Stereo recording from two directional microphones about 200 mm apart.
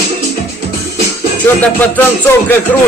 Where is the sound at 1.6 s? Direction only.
10° left (ahead or behind).